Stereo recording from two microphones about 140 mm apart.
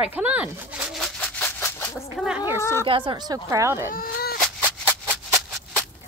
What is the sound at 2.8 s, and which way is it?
Speech, 35° right (ahead or behind).